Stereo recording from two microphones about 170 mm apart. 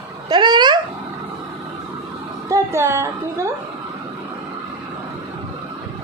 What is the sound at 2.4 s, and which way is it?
A woman's voice, 15° right (ahead or behind).